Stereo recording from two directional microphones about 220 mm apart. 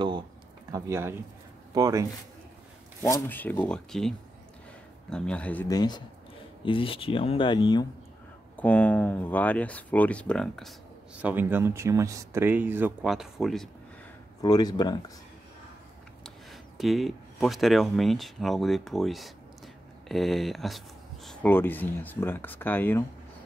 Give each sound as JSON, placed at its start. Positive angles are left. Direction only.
{"t": 0.7, "sound": "speech", "side_deg": -15}
{"t": 3.0, "sound": "speech", "side_deg": 15}
{"t": 5.1, "sound": "speech", "side_deg": 5}
{"t": 8.5, "sound": "speech", "side_deg": 5}
{"t": 11.1, "sound": "speech", "side_deg": -10}
{"t": 14.4, "sound": "speech", "side_deg": 15}
{"t": 16.7, "sound": "speech", "side_deg": 0}